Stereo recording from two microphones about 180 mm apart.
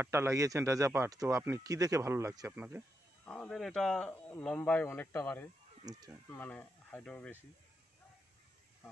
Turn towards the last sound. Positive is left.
turn(degrees=5)  # may be behind; listen again after turning